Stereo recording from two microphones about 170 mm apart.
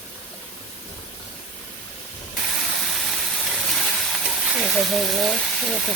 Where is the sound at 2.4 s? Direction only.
Centre (ahead or behind).